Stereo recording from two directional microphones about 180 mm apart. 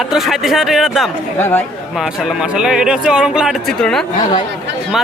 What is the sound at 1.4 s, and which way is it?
Speech, 10° left (ahead or behind).